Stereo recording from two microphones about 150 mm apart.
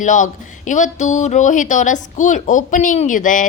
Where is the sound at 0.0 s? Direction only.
55° left (ahead or behind).